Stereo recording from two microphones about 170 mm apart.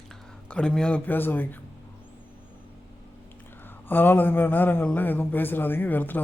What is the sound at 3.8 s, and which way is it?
A man's voice, 10° left (ahead or behind).